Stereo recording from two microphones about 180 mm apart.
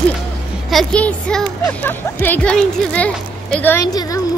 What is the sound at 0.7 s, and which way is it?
Speech, 5° left (ahead or behind).